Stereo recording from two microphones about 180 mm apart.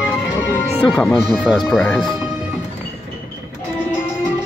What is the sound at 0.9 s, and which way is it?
Speech, 10° left (ahead or behind).